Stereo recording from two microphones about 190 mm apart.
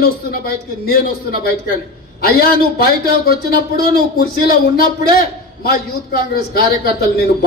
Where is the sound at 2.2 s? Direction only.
50° left (ahead or behind).